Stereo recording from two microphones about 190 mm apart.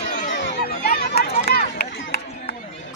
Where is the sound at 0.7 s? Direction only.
55° left (ahead or behind).